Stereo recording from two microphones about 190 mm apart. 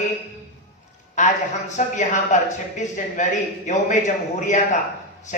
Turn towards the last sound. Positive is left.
turn(degrees=40)  # may be behind; listen again after turning